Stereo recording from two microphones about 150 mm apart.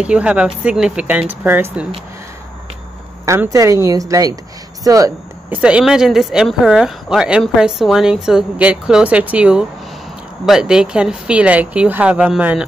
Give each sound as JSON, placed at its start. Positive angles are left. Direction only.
{"t": 0.0, "sound": "speech", "side_deg": -5}
{"t": 3.3, "sound": "speech", "side_deg": -20}
{"t": 5.5, "sound": "speech", "side_deg": -5}